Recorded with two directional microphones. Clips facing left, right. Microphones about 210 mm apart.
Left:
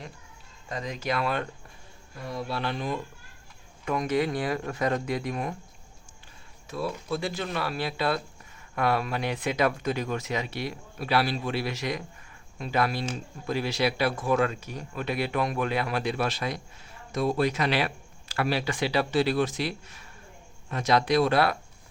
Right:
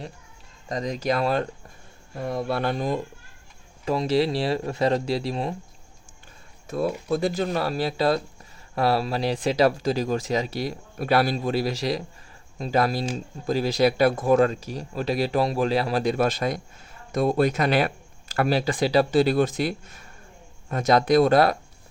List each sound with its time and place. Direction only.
0.7 s speech: 40° right (ahead or behind)
2.1 s speech: 55° right (ahead or behind); by 5.5 s 30° right (ahead or behind)
6.7 s speech: 45° right (ahead or behind)